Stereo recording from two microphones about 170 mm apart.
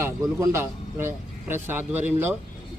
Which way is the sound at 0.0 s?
15° right (ahead or behind).